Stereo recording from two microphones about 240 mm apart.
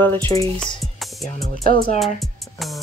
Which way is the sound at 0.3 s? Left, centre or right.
Centre.